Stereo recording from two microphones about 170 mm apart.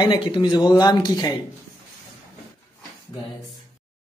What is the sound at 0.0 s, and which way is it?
Speech, 30° left (ahead or behind).